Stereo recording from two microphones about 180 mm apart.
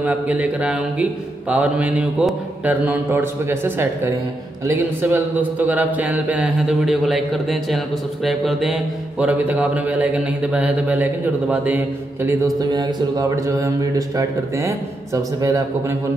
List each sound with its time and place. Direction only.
0.0 s a man's voice: 10° right (ahead or behind)
12.7 s speech: 20° right (ahead or behind)